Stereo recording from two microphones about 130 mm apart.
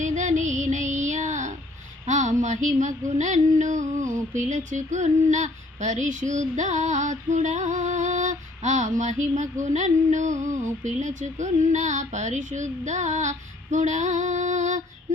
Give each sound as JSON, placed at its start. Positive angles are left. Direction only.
{"t": 0.0, "sound": "music", "side_deg": -70}
{"t": 2.0, "sound": "female singing", "side_deg": -65}
{"t": 4.4, "sound": "speech", "side_deg": -70}